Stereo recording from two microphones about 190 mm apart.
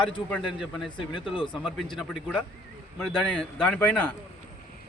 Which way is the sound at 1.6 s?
Centre (ahead or behind).